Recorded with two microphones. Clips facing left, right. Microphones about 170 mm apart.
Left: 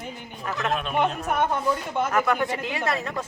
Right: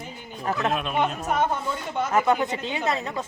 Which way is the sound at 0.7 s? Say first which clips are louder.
Left 3 dB; 5° right (ahead or behind).